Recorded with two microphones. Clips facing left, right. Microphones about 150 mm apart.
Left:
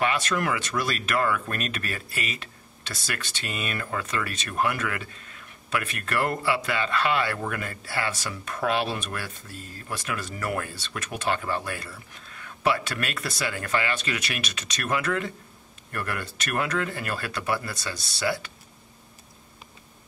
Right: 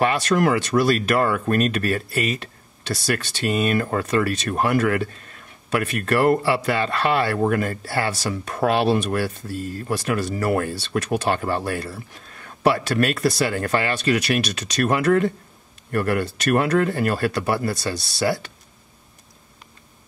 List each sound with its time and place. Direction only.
0.0 s speech: 35° right (ahead or behind)